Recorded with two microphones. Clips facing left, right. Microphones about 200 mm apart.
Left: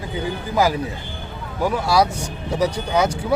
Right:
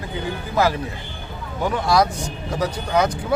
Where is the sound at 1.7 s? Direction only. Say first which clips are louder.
Even; 5° left (ahead or behind).